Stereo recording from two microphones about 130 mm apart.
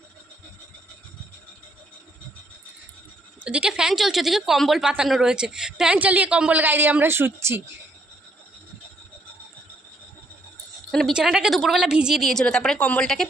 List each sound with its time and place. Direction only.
3.4 s speech: 10° right (ahead or behind)
10.9 s a woman's voice: centre (ahead or behind)